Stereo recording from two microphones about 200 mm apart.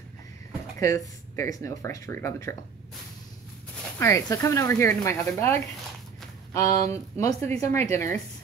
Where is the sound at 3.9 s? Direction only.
15° left (ahead or behind).